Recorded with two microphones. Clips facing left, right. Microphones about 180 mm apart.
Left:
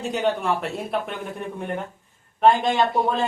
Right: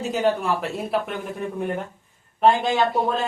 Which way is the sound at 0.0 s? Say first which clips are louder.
Right 1 dB; centre (ahead or behind).